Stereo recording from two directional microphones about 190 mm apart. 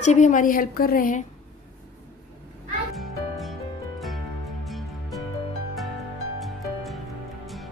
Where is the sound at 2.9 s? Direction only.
Centre (ahead or behind).